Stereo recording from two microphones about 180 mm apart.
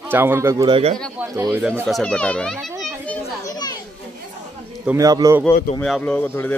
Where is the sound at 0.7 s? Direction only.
35° right (ahead or behind).